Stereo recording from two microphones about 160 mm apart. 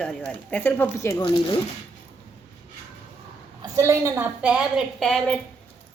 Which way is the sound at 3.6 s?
20° right (ahead or behind).